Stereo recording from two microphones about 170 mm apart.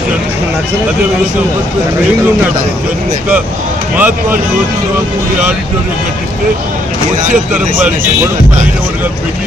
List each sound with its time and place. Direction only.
3.9 s speech: 10° right (ahead or behind)